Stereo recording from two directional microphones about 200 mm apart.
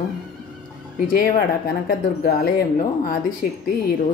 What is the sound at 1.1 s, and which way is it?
Speech, 45° left (ahead or behind).